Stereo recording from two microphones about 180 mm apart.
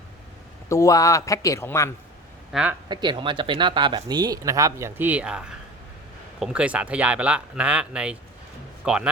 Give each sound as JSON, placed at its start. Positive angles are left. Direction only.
{"t": 0.7, "sound": "speech", "side_deg": 20}
{"t": 2.5, "sound": "speech", "side_deg": -5}
{"t": 2.9, "sound": "a man's voice", "side_deg": -25}